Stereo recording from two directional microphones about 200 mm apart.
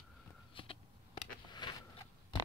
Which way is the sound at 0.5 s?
25° left (ahead or behind).